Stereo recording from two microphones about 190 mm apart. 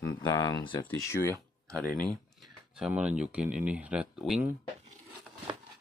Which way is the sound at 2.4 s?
5° right (ahead or behind).